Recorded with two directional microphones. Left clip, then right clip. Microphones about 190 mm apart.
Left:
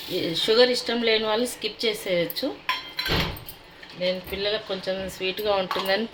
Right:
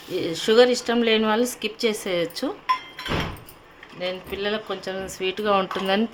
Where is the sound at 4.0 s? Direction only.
35° right (ahead or behind).